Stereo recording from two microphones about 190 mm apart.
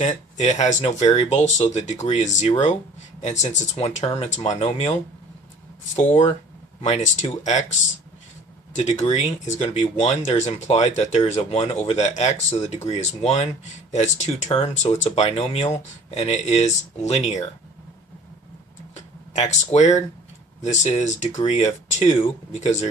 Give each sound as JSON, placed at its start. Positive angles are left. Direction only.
{"t": 0.0, "sound": "speech", "side_deg": 40}
{"t": 6.0, "sound": "speech", "side_deg": 35}
{"t": 18.9, "sound": "a sound", "side_deg": 35}
{"t": 19.7, "sound": "speech", "side_deg": 35}